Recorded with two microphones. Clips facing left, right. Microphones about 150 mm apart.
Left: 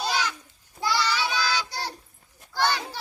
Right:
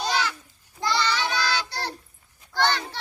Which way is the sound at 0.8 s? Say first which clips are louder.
Right 1 dB; 5° left (ahead or behind).